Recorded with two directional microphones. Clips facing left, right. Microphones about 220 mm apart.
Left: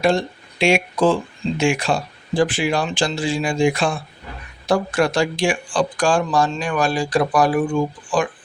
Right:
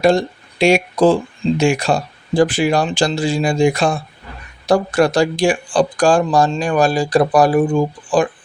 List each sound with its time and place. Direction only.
0.0 s speech: 40° right (ahead or behind)